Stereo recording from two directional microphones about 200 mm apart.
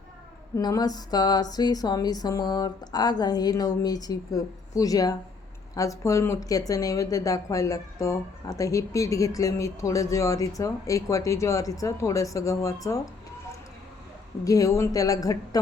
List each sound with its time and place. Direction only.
0.5 s a sound: 20° left (ahead or behind)
5.7 s a woman's voice: 15° left (ahead or behind)
14.4 s a woman's voice: 15° left (ahead or behind)